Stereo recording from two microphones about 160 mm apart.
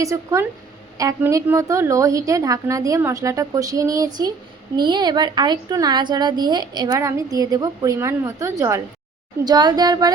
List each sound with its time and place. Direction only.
0.0 s a woman's voice: 20° right (ahead or behind)